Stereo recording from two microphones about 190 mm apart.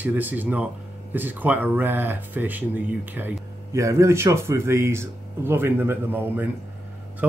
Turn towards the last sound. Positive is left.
turn(degrees=-10)  # may be behind; listen again after turning